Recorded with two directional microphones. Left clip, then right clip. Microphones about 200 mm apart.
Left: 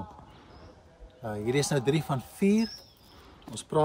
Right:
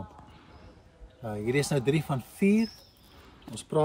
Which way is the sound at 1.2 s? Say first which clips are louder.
Even; 15° left (ahead or behind).